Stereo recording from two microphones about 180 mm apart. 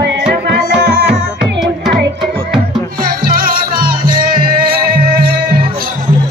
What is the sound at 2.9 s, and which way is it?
Music, 55° right (ahead or behind).